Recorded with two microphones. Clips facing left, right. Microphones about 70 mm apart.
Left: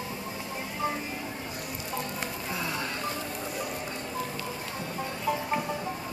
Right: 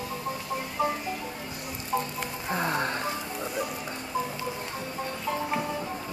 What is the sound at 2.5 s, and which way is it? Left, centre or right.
Music, right.